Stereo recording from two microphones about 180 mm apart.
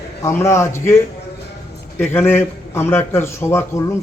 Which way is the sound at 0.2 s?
15° left (ahead or behind).